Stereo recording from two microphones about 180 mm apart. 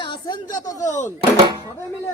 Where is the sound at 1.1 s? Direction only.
30° right (ahead or behind).